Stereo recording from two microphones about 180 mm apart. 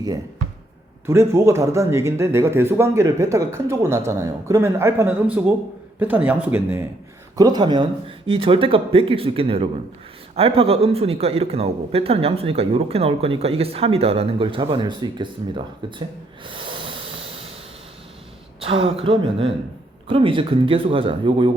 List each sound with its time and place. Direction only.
1.0 s speech: 15° right (ahead or behind)
7.3 s speech: 20° right (ahead or behind)
16.5 s snort: 30° right (ahead or behind)
18.6 s speech: 30° right (ahead or behind)